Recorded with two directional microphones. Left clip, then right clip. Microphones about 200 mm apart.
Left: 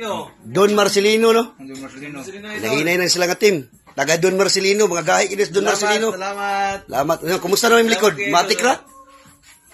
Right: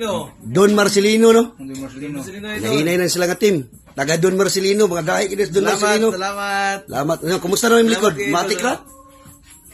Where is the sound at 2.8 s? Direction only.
Centre (ahead or behind).